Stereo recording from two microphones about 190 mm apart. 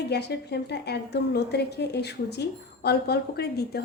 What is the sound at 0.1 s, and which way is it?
A woman's voice, 60° left (ahead or behind).